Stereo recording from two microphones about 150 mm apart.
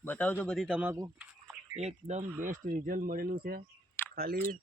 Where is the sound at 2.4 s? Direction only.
65° right (ahead or behind); by 4.5 s 85° right.